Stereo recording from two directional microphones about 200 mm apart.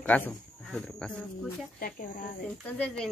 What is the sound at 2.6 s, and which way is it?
Speech, 5° left (ahead or behind).